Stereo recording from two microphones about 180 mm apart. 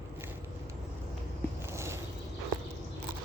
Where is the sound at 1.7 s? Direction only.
15° right (ahead or behind).